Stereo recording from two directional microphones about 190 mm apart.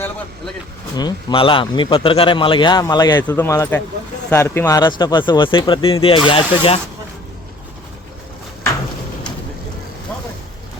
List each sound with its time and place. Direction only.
0.9 s speech: 25° left (ahead or behind)